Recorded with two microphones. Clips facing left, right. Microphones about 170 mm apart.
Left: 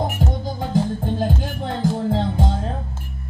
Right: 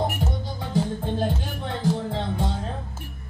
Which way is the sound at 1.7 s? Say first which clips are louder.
Left 4 dB; 45° left (ahead or behind).